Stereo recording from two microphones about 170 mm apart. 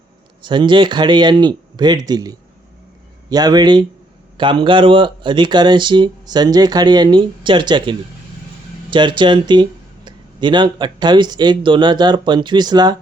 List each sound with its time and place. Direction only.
0.4 s speech: 30° right (ahead or behind)